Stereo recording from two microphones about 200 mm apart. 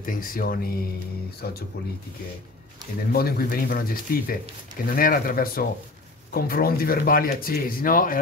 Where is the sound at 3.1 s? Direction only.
50° left (ahead or behind).